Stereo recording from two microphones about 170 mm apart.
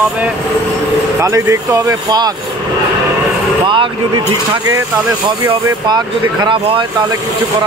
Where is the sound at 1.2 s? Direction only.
15° right (ahead or behind).